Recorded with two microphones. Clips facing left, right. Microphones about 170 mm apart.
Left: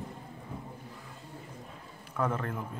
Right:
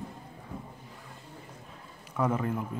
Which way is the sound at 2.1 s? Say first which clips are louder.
Right 3 dB; 10° right (ahead or behind).